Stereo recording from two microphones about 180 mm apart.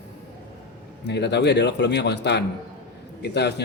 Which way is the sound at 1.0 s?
70° left (ahead or behind).